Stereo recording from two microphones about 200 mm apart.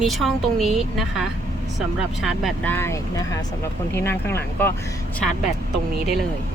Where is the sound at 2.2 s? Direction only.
5° left (ahead or behind).